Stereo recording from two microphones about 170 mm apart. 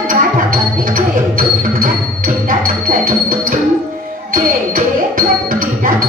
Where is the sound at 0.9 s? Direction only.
55° right (ahead or behind).